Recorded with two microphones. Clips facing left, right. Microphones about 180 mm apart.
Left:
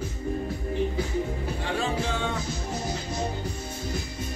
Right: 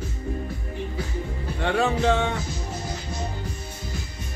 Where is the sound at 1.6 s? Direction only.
65° right (ahead or behind).